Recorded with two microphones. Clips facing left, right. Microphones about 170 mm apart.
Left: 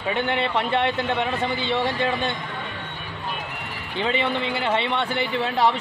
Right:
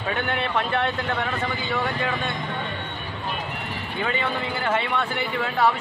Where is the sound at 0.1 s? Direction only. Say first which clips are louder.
Left 2 dB; 20° left (ahead or behind).